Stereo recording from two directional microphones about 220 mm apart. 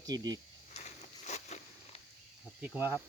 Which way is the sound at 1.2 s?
30° left (ahead or behind).